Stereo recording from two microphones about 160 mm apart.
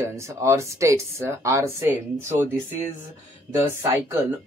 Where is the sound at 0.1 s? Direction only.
15° right (ahead or behind).